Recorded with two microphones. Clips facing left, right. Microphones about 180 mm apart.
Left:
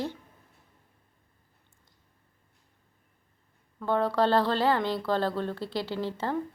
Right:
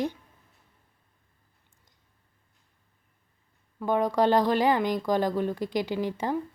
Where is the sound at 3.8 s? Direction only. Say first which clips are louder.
Right 2 dB; 15° right (ahead or behind).